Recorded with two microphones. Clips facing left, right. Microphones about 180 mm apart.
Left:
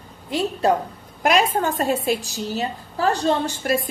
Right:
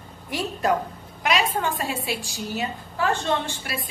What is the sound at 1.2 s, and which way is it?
A woman's voice, 45° left (ahead or behind).